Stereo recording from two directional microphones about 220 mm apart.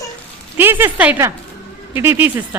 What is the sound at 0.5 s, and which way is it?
A woman's voice, 10° right (ahead or behind).